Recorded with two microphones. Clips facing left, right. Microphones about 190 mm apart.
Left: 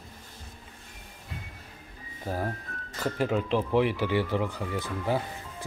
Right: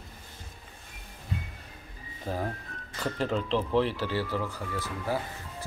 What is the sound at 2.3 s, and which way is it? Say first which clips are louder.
Speech: left 1 dB; 5° left (ahead or behind).